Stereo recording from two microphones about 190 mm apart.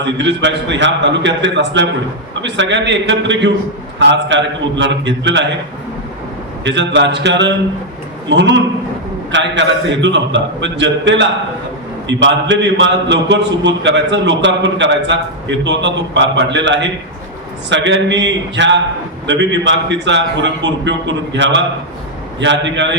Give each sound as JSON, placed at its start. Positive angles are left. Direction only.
{"t": 0.0, "sound": "a man's voice", "side_deg": -70}
{"t": 6.7, "sound": "a man's voice", "side_deg": -70}